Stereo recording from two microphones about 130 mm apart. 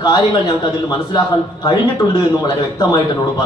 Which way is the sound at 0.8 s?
30° left (ahead or behind).